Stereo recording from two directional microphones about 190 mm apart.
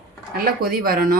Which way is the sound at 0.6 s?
50° right (ahead or behind).